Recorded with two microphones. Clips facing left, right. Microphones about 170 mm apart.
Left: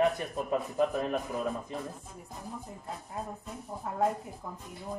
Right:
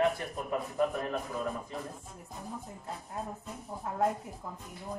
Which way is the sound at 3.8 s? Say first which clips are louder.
Left 1 dB; centre (ahead or behind).